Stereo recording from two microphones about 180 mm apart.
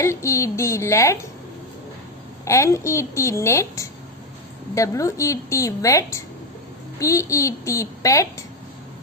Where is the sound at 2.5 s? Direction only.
15° left (ahead or behind).